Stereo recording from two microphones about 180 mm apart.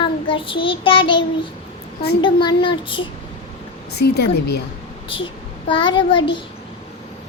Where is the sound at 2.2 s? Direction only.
25° left (ahead or behind).